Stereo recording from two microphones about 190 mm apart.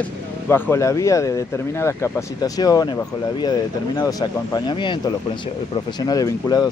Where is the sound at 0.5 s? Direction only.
15° left (ahead or behind).